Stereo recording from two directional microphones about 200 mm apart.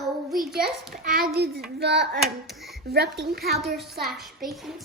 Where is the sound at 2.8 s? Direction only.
55° right (ahead or behind).